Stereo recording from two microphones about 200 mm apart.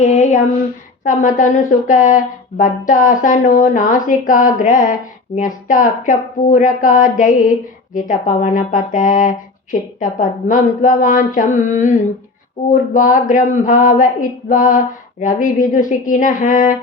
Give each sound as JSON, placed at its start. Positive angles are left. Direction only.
{"t": 0.0, "sound": "female singing", "side_deg": 35}
{"t": 1.0, "sound": "speech", "side_deg": 40}